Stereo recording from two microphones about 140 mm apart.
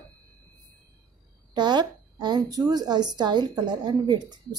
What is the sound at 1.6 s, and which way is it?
A woman's voice, 30° right (ahead or behind).